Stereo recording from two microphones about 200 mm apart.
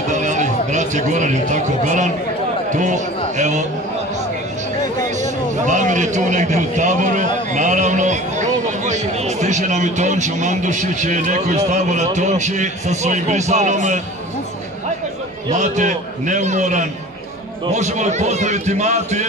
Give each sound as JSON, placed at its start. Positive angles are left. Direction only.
{"t": 0.1, "sound": "a man's voice", "side_deg": -35}
{"t": 5.2, "sound": "a man's voice", "side_deg": -40}
{"t": 15.5, "sound": "a man's voice", "side_deg": -35}